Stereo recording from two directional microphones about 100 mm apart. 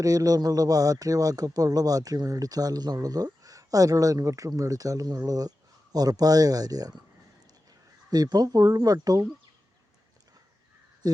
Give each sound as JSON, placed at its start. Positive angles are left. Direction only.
{"t": 0.0, "sound": "a man's voice", "side_deg": -35}
{"t": 8.1, "sound": "a man's voice", "side_deg": -40}
{"t": 11.0, "sound": "speech", "side_deg": -40}